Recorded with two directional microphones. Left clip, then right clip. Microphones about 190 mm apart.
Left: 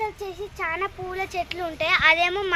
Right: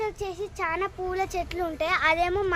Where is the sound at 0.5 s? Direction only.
40° right (ahead or behind).